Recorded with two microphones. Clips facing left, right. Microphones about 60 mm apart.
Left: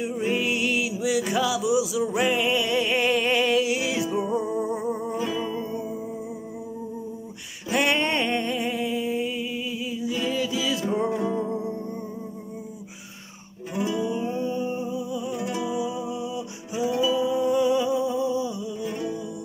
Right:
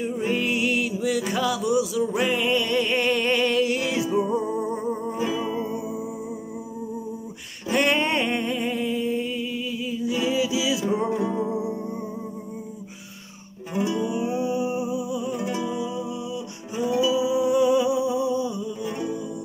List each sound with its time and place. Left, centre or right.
0.0 s music: centre
5.5 s music: centre
7.6 s a sound: centre
13.7 s music: centre
15.7 s music: centre
16.7 s music: centre